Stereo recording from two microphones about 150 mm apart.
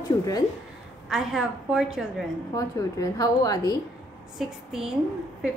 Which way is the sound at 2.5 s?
25° left (ahead or behind).